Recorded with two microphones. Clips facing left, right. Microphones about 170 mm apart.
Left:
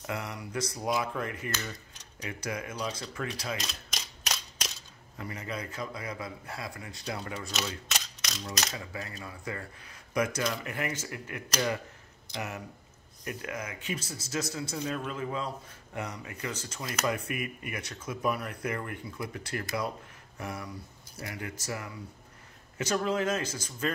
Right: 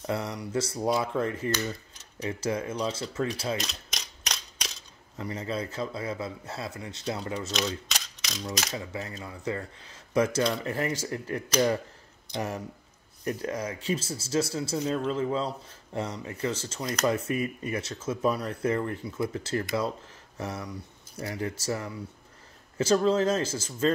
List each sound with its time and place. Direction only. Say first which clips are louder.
0.0 s speech: right 5 dB; 30° right (ahead or behind)
3.6 s typewriter: right 2 dB; 5° left (ahead or behind)
5.1 s speech: right 5 dB; 30° right (ahead or behind)
7.9 s mechanisms: even; centre (ahead or behind)
8.7 s speech: right 4 dB; 25° right (ahead or behind)